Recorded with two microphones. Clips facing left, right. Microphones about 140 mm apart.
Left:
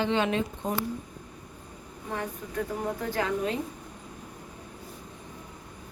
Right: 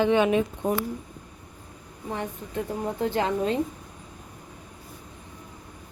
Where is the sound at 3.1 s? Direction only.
30° right (ahead or behind).